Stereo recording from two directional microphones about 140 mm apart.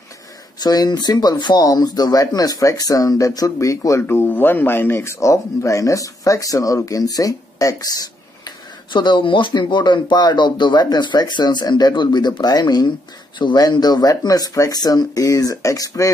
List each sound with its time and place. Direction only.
0.6 s speech: 30° left (ahead or behind)